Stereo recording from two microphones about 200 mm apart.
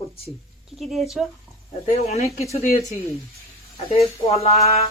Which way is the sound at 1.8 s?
30° left (ahead or behind).